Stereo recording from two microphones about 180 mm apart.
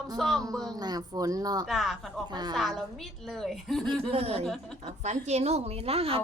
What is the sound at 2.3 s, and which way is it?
Speech, 25° right (ahead or behind).